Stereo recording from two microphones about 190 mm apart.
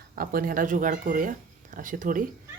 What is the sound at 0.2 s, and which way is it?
Speech, 50° right (ahead or behind).